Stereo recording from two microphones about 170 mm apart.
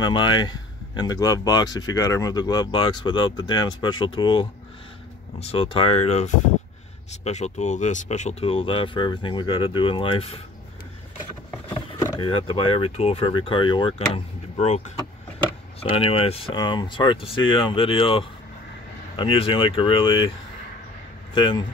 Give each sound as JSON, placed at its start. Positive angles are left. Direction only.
{"t": 0.0, "sound": "speech", "side_deg": 25}
{"t": 12.0, "sound": "a sound", "side_deg": 20}
{"t": 12.3, "sound": "speech", "side_deg": 30}
{"t": 15.8, "sound": "speech", "side_deg": 35}
{"t": 21.4, "sound": "speech", "side_deg": 25}